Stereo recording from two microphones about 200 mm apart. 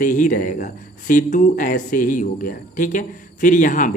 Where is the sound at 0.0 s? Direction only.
40° left (ahead or behind).